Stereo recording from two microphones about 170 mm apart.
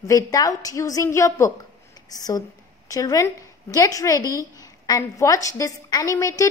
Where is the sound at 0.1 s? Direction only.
20° left (ahead or behind).